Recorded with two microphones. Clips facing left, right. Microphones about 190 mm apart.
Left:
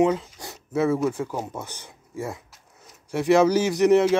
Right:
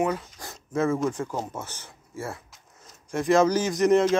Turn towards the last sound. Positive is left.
turn(degrees=10)  # may be behind; listen again after turning